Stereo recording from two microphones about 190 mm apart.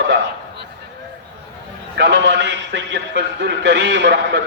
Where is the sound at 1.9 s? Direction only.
65° right (ahead or behind).